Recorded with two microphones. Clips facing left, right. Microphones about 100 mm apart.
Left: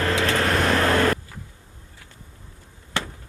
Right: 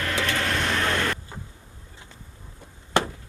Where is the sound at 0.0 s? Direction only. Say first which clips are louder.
Left 5 dB; 35° left (ahead or behind).